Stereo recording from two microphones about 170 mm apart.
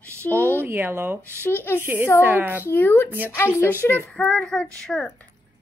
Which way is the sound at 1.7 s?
10° right (ahead or behind).